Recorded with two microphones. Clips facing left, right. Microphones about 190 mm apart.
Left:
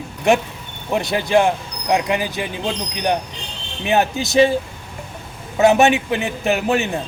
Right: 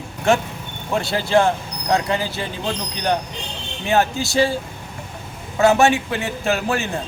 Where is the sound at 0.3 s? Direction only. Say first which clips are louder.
Left 2 dB; 15° left (ahead or behind).